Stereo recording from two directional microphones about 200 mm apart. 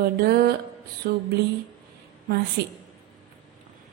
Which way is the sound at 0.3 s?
50° right (ahead or behind).